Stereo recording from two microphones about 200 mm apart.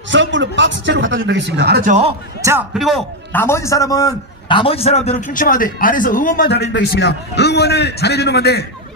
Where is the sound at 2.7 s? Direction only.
Centre (ahead or behind).